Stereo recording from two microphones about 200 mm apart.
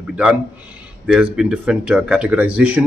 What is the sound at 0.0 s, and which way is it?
A man's voice, 5° right (ahead or behind).